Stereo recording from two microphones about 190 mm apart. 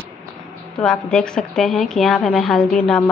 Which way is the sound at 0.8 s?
5° left (ahead or behind).